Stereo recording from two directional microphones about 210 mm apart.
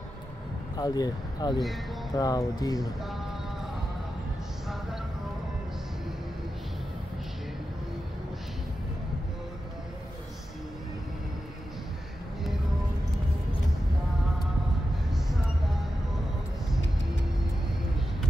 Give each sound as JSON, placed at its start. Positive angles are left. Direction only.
{"t": 0.7, "sound": "speech", "side_deg": 20}